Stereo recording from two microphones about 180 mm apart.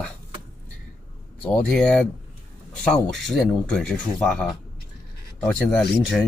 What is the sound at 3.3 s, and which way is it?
Speech, 5° left (ahead or behind).